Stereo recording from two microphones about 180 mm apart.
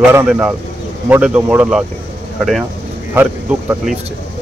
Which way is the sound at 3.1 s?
10° right (ahead or behind).